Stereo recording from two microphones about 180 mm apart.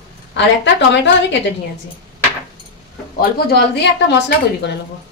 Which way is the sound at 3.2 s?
60° left (ahead or behind).